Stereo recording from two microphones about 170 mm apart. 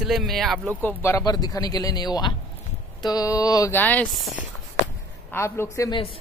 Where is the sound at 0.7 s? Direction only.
10° left (ahead or behind).